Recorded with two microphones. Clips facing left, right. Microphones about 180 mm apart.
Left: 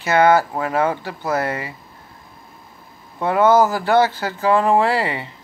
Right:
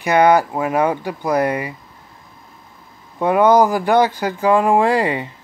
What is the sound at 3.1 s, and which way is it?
Speech, 15° right (ahead or behind).